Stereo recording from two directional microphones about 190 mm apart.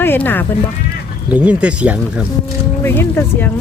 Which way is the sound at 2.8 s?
10° left (ahead or behind).